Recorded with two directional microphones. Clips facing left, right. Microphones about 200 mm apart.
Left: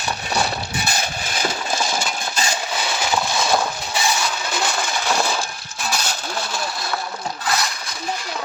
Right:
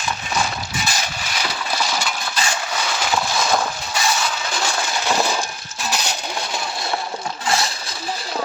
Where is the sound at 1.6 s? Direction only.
25° left (ahead or behind).